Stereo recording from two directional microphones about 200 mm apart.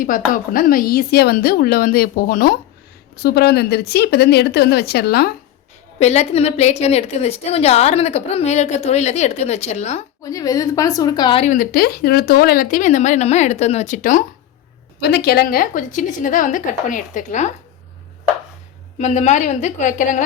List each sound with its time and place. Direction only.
0.0 s speech: 45° left (ahead or behind)
6.0 s a woman's voice: 35° left (ahead or behind)
10.2 s a woman's voice: 15° left (ahead or behind)
11.4 s a woman's voice: 45° left (ahead or behind)
15.0 s a woman's voice: 55° left (ahead or behind)
18.9 s a woman's voice: 35° left (ahead or behind)